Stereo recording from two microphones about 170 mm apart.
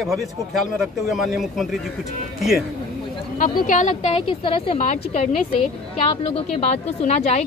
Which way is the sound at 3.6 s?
45° left (ahead or behind).